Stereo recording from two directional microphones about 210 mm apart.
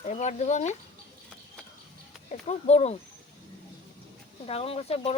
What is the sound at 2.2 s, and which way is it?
Speech, 30° left (ahead or behind).